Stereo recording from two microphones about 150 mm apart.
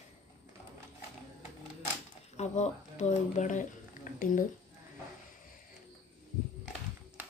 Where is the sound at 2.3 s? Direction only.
50° left (ahead or behind).